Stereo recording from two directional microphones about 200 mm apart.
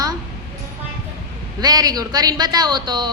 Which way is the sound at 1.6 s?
20° right (ahead or behind).